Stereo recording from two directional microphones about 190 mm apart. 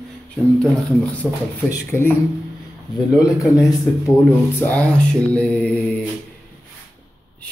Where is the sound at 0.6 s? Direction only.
5° left (ahead or behind).